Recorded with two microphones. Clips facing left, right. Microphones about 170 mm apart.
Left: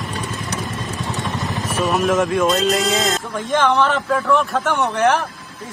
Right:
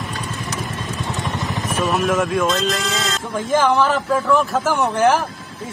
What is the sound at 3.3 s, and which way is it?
Speech, 5° right (ahead or behind).